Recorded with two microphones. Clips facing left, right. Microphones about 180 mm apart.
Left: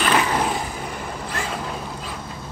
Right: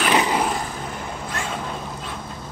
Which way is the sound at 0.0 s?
15° right (ahead or behind).